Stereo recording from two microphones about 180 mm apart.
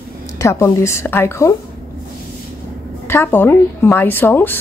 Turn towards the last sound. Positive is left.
turn(degrees=10)  # may be behind; listen again after turning